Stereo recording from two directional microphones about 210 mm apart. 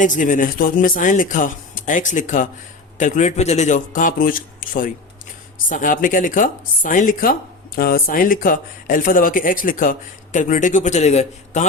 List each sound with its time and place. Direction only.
0.0 s speech: 40° left (ahead or behind)